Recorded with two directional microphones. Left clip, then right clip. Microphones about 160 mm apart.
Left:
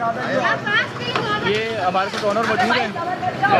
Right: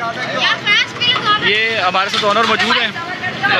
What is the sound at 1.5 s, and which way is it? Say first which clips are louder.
Speech: right 6 dB; 5° left (ahead or behind).